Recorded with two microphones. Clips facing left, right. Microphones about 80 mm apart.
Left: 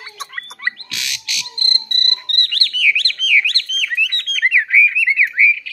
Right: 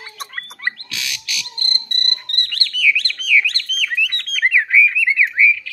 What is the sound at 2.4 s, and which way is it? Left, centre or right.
Bird, centre.